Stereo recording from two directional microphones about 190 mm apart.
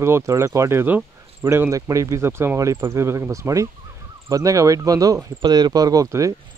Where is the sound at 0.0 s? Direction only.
15° right (ahead or behind).